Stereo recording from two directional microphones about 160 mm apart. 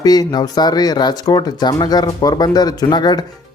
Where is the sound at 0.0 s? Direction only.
25° left (ahead or behind).